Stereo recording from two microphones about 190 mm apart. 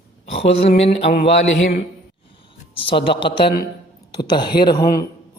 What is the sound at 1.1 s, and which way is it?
Speech, 60° left (ahead or behind).